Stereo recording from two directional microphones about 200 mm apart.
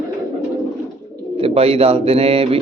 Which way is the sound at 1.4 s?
30° right (ahead or behind).